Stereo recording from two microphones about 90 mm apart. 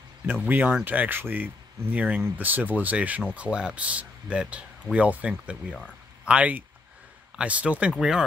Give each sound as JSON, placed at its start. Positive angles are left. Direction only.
{"t": 0.3, "sound": "speech", "side_deg": -20}